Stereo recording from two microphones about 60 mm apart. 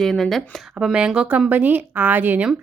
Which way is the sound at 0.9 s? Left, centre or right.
Centre.